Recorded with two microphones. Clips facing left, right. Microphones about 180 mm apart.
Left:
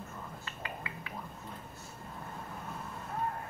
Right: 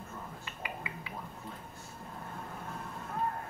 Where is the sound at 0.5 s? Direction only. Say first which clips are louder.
Right 1 dB; 15° right (ahead or behind).